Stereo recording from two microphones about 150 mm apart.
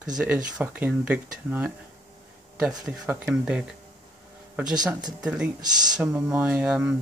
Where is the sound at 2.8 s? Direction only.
10° right (ahead or behind).